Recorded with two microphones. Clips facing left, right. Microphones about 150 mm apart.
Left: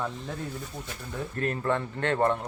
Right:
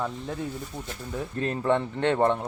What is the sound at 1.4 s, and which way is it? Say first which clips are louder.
Speech: right 3 dB; 20° right (ahead or behind).